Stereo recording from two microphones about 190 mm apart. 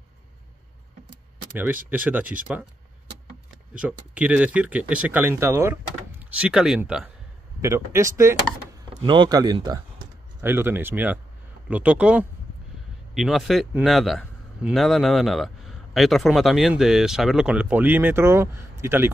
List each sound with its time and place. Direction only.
1.9 s speech: 10° right (ahead or behind)
3.7 s speech: 5° right (ahead or behind)
7.6 s speech: 15° right (ahead or behind)